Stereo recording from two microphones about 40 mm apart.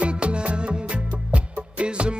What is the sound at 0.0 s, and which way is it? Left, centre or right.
Music, right.